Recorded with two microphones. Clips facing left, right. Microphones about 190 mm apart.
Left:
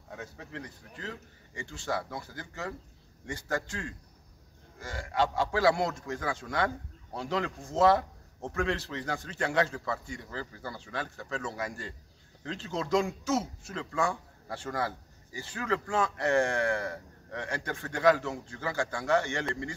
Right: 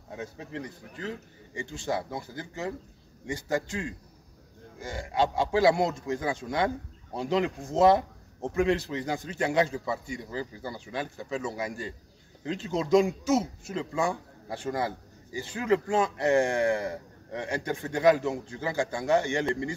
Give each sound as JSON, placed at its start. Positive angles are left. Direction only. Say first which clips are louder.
{"t": 0.1, "sound": "a man's voice", "louder": "right 5 dB", "side_deg": -20}